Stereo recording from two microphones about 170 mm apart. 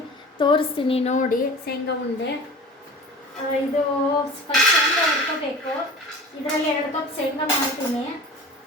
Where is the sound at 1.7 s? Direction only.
65° left (ahead or behind).